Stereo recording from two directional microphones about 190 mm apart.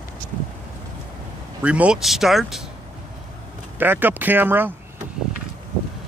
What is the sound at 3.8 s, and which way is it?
Speech, 10° right (ahead or behind).